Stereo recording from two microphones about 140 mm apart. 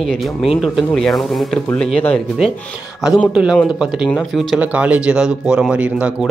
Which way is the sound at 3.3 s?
5° right (ahead or behind).